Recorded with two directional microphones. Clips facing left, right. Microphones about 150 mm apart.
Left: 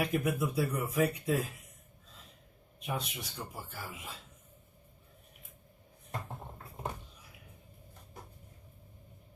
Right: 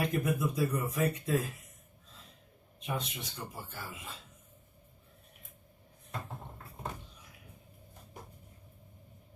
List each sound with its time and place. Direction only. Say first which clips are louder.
0.0 s speech: even; 10° left (ahead or behind)
2.8 s speech: even; 10° left (ahead or behind)